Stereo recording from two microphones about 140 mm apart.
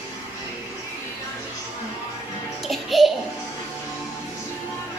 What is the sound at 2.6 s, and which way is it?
Music, centre (ahead or behind).